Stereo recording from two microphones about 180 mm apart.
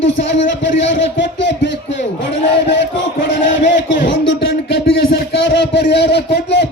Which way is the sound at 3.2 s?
85° left.